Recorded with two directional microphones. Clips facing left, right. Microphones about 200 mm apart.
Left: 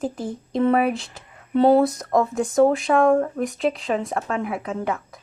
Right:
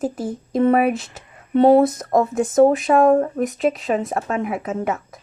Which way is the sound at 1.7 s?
20° right (ahead or behind).